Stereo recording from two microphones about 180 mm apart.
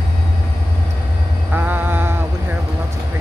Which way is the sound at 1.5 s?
10° right (ahead or behind).